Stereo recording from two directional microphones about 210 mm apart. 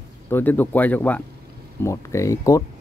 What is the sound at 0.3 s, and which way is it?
Speech, 10° left (ahead or behind).